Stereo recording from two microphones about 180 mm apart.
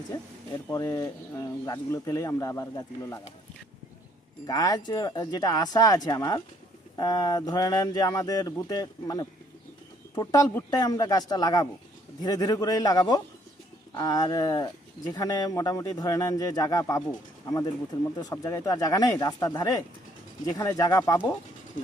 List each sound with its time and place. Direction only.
0.1 s speech: 20° left (ahead or behind)
4.4 s speech: 20° left (ahead or behind)
18.2 s speech: 20° left (ahead or behind)